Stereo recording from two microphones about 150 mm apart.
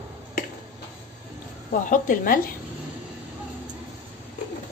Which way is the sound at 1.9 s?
65° left (ahead or behind).